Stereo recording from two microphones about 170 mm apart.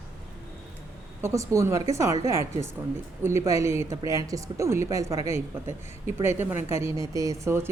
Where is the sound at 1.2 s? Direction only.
20° right (ahead or behind).